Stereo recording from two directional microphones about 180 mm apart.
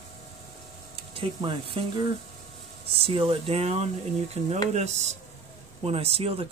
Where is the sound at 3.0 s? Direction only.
30° right (ahead or behind).